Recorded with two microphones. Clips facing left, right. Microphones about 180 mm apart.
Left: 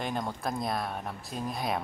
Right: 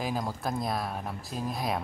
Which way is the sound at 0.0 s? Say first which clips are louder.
Right 1 dB; centre (ahead or behind).